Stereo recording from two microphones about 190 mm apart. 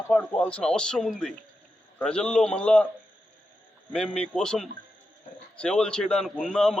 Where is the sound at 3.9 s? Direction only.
5° left (ahead or behind).